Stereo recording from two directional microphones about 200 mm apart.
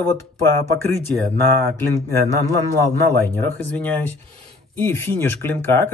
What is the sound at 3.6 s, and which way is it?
Speech, 10° left (ahead or behind).